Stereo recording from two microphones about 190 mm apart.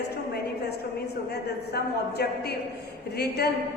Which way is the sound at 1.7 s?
55° left (ahead or behind).